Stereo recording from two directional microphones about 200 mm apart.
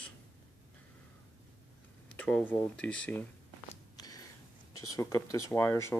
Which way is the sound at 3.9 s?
20° left (ahead or behind).